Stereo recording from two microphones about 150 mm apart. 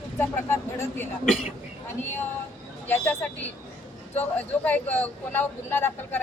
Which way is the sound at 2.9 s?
10° left (ahead or behind).